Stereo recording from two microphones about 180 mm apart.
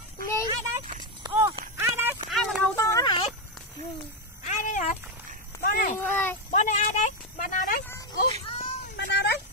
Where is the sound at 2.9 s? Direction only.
25° left (ahead or behind).